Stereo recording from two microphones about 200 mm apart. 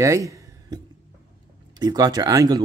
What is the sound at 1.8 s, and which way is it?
Speech, 20° right (ahead or behind).